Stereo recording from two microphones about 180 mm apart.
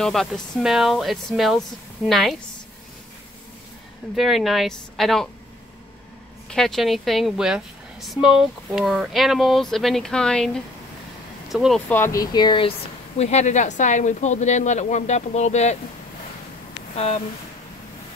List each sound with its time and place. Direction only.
0.0 s a woman's voice: centre (ahead or behind)
4.1 s a woman's voice: centre (ahead or behind)
6.5 s a woman's voice: centre (ahead or behind)
11.9 s speech: 15° left (ahead or behind)
13.2 s speech: 40° left (ahead or behind)
16.9 s speech: 35° left (ahead or behind)